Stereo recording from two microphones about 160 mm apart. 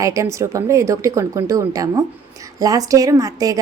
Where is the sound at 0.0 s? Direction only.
20° right (ahead or behind).